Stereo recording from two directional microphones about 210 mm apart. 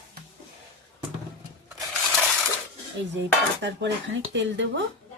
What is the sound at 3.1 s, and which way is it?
Speech, 55° right (ahead or behind).